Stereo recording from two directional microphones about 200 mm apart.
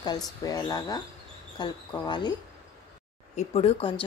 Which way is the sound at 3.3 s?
30° left (ahead or behind).